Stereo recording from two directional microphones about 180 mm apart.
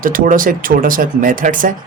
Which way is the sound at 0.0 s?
50° right (ahead or behind).